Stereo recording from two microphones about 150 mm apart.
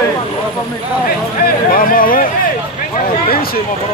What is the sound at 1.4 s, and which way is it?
Speech, 70° left (ahead or behind).